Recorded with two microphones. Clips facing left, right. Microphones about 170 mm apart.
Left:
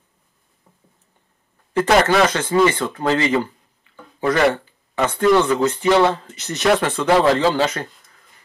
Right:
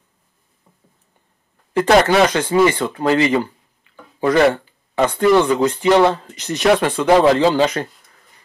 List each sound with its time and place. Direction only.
1.7 s speech: 15° right (ahead or behind)
5.0 s speech: 10° right (ahead or behind)